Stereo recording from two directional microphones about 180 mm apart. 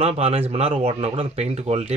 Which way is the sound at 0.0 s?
35° right (ahead or behind).